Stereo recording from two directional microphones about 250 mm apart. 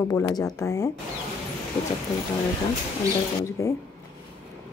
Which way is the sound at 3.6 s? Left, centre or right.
Centre.